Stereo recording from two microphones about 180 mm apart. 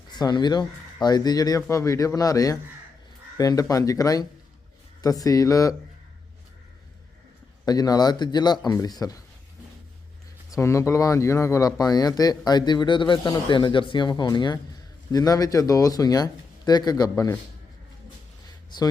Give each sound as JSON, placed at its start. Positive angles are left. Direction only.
{"t": 0.1, "sound": "speech", "side_deg": 25}
{"t": 7.6, "sound": "speech", "side_deg": 20}
{"t": 10.5, "sound": "speech", "side_deg": 15}